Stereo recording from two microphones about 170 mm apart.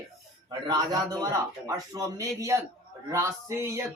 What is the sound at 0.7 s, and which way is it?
Speech, 25° right (ahead or behind).